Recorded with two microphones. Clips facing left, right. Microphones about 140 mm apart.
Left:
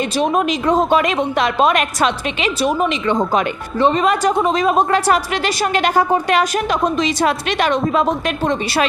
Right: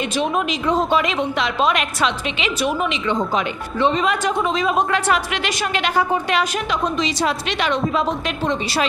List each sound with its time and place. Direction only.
0.2 s speech: 45° left (ahead or behind)